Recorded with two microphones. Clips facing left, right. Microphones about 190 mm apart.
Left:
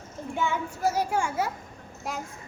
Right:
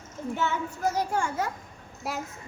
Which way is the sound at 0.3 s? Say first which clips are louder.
Left 2 dB; 10° left (ahead or behind).